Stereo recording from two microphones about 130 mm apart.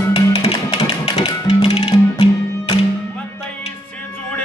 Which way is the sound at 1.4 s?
50° left (ahead or behind).